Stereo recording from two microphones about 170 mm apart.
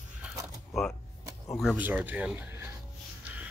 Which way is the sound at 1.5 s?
Centre (ahead or behind).